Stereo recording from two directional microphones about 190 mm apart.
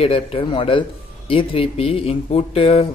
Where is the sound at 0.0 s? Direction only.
30° left (ahead or behind).